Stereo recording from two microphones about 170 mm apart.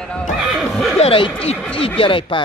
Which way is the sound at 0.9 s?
35° left (ahead or behind).